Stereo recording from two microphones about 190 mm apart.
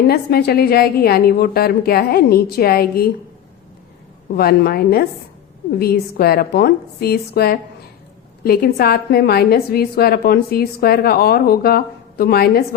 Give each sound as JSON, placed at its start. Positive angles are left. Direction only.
{"t": 0.1, "sound": "a woman's voice", "side_deg": 55}
{"t": 4.4, "sound": "a woman's voice", "side_deg": 55}